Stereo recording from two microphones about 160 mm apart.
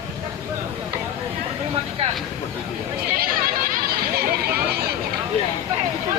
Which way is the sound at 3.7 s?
70° right (ahead or behind).